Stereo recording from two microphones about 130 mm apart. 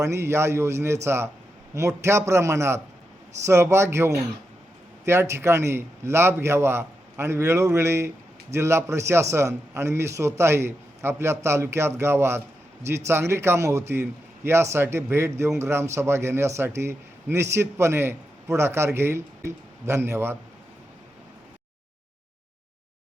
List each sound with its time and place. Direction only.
0.0 s a man's voice: 20° right (ahead or behind)